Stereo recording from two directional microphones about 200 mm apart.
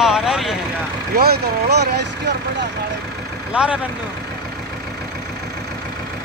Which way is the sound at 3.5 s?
5° right (ahead or behind).